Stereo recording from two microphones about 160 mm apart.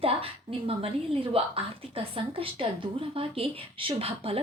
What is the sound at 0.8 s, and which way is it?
A woman's voice, 35° right (ahead or behind).